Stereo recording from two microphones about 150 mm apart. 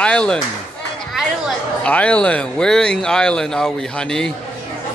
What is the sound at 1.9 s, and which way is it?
Speech, 10° left (ahead or behind).